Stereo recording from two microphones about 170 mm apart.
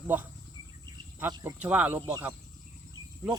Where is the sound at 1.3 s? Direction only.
20° right (ahead or behind).